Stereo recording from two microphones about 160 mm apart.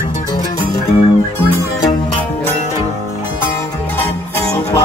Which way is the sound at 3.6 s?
15° left (ahead or behind).